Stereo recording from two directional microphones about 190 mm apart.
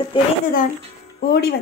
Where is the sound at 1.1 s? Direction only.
55° left (ahead or behind).